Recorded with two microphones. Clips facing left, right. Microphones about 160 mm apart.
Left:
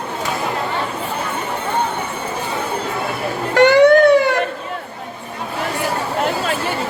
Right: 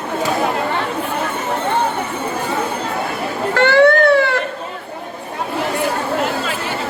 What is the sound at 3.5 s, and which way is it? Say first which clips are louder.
Music: left 2 dB; 15° left (ahead or behind).